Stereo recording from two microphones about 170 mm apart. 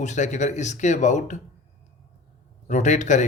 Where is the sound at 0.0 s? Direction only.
45° left (ahead or behind).